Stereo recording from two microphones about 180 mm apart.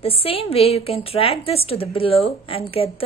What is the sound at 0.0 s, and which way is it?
A woman's voice, 30° left (ahead or behind).